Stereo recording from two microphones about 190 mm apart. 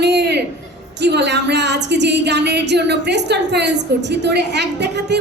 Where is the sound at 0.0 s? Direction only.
60° right (ahead or behind).